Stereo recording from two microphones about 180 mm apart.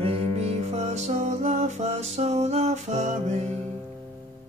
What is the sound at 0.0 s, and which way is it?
Music, 35° right (ahead or behind).